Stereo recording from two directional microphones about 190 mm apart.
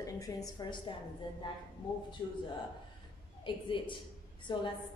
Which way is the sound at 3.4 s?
25° left (ahead or behind).